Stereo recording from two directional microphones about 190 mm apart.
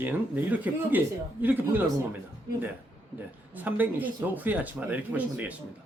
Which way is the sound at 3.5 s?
10° right (ahead or behind).